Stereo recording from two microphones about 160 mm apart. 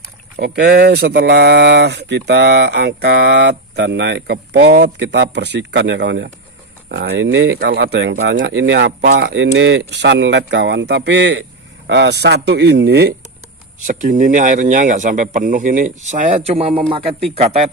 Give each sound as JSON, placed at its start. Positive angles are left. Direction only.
{"t": 0.4, "sound": "speech", "side_deg": -85}
{"t": 6.9, "sound": "speech", "side_deg": -75}
{"t": 13.8, "sound": "speech", "side_deg": -55}
{"t": 16.4, "sound": "speech", "side_deg": -40}